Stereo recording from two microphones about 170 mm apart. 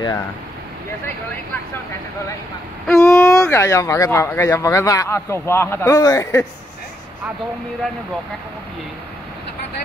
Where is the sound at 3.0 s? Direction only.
15° left (ahead or behind).